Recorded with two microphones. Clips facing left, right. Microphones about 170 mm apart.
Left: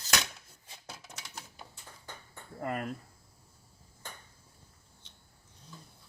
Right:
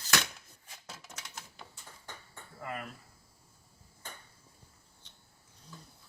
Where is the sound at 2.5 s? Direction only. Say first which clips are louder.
Left 6 dB; 40° left (ahead or behind).